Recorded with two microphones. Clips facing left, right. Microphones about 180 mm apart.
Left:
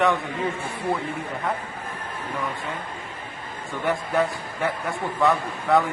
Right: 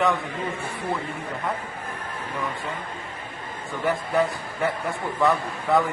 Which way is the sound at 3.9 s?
Centre (ahead or behind).